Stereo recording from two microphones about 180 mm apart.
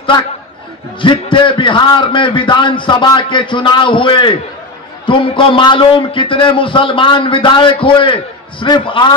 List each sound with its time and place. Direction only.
1.0 s a man's voice: 25° left (ahead or behind)